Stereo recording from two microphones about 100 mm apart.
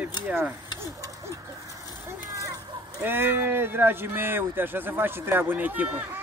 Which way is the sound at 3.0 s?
20° right (ahead or behind).